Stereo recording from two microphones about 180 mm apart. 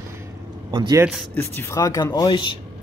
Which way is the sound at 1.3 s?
15° left (ahead or behind).